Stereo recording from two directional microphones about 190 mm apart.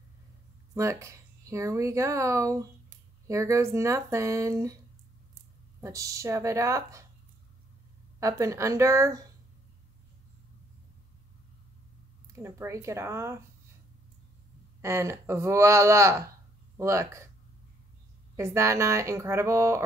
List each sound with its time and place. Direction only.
0.7 s speech: 15° right (ahead or behind)
8.2 s speech: 15° right (ahead or behind)
12.4 s speech: 15° right (ahead or behind)
14.8 s speech: 15° right (ahead or behind)
18.3 s speech: 15° right (ahead or behind)